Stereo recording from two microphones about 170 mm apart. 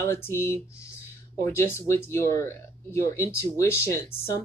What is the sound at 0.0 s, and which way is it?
Speech, 15° left (ahead or behind).